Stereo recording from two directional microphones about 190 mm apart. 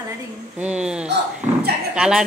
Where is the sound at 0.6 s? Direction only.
5° right (ahead or behind).